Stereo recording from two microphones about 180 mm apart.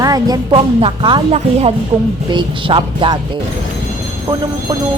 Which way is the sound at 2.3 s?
30° right (ahead or behind).